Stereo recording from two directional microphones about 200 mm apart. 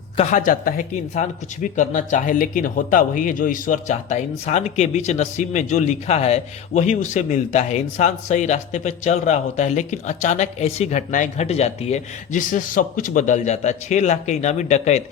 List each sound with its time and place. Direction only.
0.2 s a man's voice: 40° left (ahead or behind)